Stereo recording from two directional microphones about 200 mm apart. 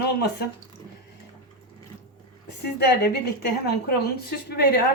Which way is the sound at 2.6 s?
55° left (ahead or behind).